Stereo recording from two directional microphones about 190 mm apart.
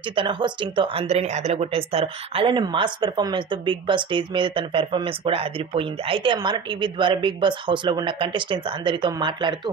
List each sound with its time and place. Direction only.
0.1 s speech: 25° right (ahead or behind)